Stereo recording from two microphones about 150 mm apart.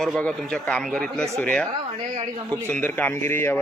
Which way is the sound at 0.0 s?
5° left (ahead or behind).